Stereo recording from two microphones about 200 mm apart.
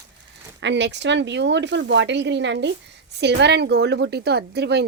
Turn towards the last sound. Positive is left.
turn(degrees=-55)  # may be behind; listen again after turning